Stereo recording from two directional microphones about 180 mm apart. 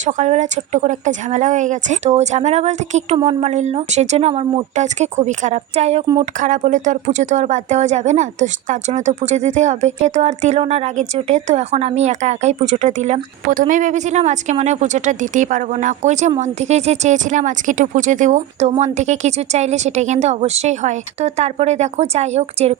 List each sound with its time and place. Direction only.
0.0 s a woman's voice: 45° right (ahead or behind)